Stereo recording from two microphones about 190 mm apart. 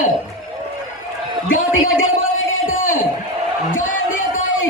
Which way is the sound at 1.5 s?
90° left.